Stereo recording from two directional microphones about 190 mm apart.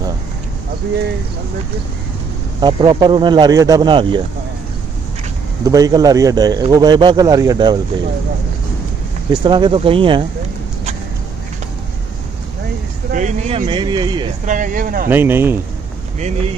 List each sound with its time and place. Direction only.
2.6 s speech: 20° right (ahead or behind)
5.7 s speech: 20° right (ahead or behind)
9.3 s speech: 25° right (ahead or behind)
13.1 s speech: 40° right (ahead or behind)
13.7 s speech: 25° right (ahead or behind)
14.4 s speech: 45° right (ahead or behind)
15.0 s speech: 10° right (ahead or behind)